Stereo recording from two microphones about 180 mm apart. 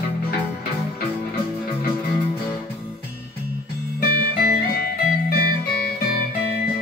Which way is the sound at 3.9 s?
55° left (ahead or behind).